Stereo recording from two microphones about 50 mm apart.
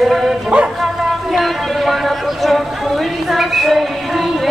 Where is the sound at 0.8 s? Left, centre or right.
Centre.